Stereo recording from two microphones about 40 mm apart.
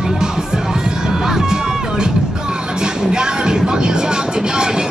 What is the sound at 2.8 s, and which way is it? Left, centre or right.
Vehicle, right.